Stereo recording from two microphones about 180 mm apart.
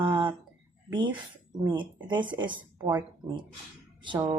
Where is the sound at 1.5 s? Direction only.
25° right (ahead or behind).